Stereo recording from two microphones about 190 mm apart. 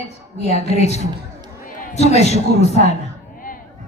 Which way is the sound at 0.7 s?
35° left (ahead or behind).